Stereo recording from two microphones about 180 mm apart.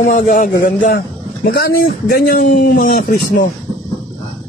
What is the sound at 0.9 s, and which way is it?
A man's voice, 65° left (ahead or behind).